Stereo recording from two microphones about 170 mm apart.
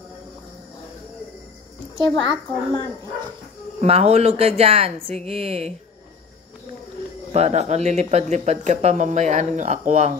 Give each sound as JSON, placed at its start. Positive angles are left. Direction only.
{"t": 2.0, "sound": "a child's voice", "side_deg": 25}
{"t": 3.8, "sound": "speech", "side_deg": -35}
{"t": 7.3, "sound": "speech", "side_deg": -40}